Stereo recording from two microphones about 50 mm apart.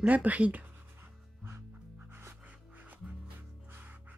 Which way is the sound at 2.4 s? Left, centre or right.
Right.